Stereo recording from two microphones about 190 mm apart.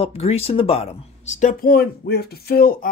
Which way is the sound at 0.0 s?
30° left (ahead or behind).